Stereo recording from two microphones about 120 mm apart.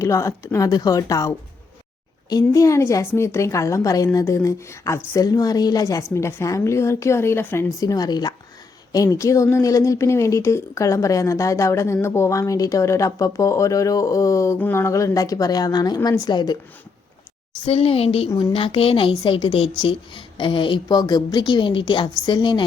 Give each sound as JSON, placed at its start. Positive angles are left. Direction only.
{"t": 0.0, "sound": "a woman's voice", "side_deg": 25}
{"t": 17.7, "sound": "speech", "side_deg": 55}
{"t": 18.3, "sound": "a woman's voice", "side_deg": 30}
{"t": 18.5, "sound": "speech", "side_deg": 50}